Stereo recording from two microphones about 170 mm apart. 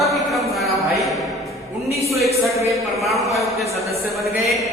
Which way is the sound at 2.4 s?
20° right (ahead or behind).